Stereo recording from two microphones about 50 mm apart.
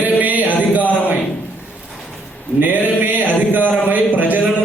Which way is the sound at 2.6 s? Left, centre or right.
Right.